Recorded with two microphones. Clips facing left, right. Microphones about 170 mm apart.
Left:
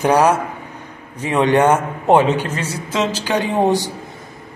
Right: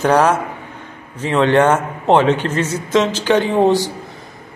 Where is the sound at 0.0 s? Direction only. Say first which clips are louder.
Even; 10° left (ahead or behind).